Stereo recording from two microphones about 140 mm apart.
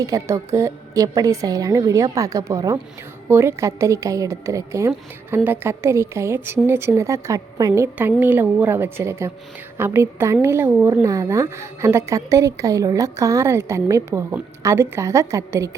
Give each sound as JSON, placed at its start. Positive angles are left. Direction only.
{"t": 0.0, "sound": "a woman's voice", "side_deg": -20}